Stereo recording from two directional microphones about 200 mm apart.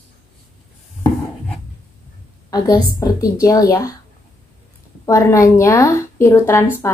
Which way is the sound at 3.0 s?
15° left (ahead or behind).